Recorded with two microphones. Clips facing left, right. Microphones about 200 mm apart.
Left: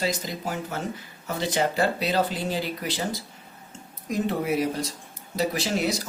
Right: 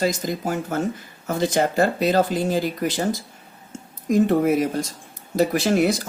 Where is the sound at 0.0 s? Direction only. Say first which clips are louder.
Right 6 dB; 50° right (ahead or behind).